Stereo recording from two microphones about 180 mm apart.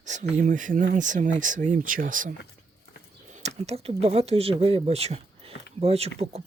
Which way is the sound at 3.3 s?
40° right (ahead or behind).